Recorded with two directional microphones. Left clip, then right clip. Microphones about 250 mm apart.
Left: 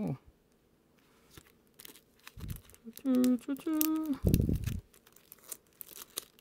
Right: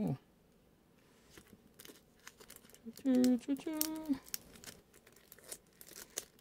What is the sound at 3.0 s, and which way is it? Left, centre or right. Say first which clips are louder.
Speech: left 2 dB; centre.